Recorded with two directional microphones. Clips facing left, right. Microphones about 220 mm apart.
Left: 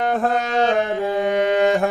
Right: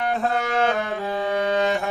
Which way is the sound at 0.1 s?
45° left (ahead or behind).